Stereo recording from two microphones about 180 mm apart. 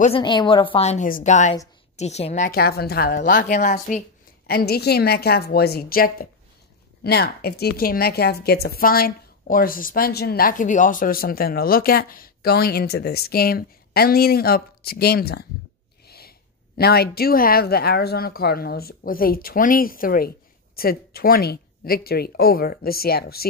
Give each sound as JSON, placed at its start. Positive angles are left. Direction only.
{"t": 0.0, "sound": "a woman's voice", "side_deg": 30}
{"t": 2.5, "sound": "a woman's voice", "side_deg": 60}
{"t": 4.5, "sound": "a woman's voice", "side_deg": 60}